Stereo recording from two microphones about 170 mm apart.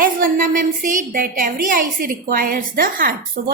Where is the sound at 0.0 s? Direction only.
55° right (ahead or behind).